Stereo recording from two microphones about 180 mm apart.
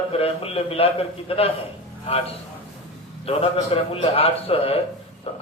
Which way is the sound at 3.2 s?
35° left (ahead or behind).